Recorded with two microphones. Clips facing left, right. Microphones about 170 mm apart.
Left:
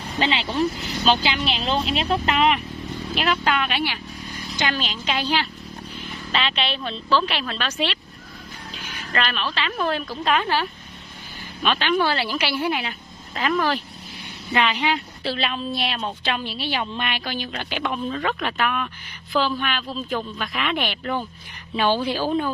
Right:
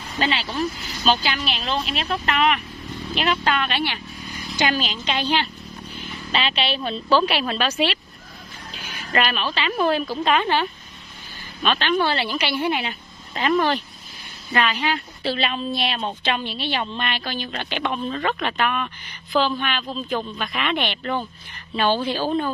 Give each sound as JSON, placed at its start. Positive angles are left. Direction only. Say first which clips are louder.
{"t": 0.2, "sound": "speech", "louder": "left 2 dB", "side_deg": 25}
{"t": 3.2, "sound": "speech", "louder": "even", "side_deg": 5}
{"t": 4.6, "sound": "speech", "louder": "right 3 dB", "side_deg": -10}
{"t": 5.0, "sound": "a woman's voice", "louder": "left 1 dB", "side_deg": 5}
{"t": 9.1, "sound": "a woman's voice", "louder": "right 3 dB", "side_deg": -10}
{"t": 14.5, "sound": "speech", "louder": "left 1 dB", "side_deg": 15}
{"t": 15.2, "sound": "a woman's voice", "louder": "right 2 dB", "side_deg": 0}